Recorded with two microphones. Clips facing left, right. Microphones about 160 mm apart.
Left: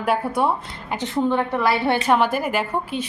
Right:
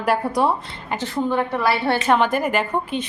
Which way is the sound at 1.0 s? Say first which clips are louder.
Left 1 dB; 20° left (ahead or behind).